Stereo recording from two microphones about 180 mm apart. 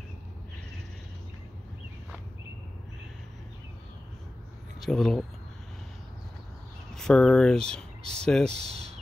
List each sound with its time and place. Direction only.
4.7 s speech: centre (ahead or behind)
7.0 s speech: 5° left (ahead or behind)
8.6 s speech: 35° right (ahead or behind)